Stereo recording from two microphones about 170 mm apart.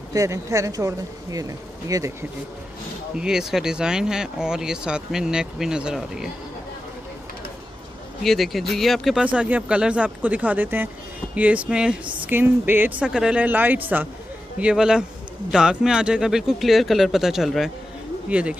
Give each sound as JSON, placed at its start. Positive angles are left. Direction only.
{"t": 0.1, "sound": "speech", "side_deg": -20}
{"t": 3.2, "sound": "speech", "side_deg": -5}
{"t": 8.2, "sound": "speech", "side_deg": 0}